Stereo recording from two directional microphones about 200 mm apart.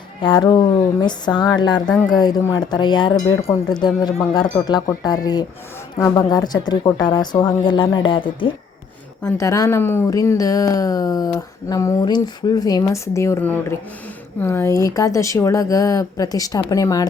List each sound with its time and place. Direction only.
0.2 s speech: 20° left (ahead or behind)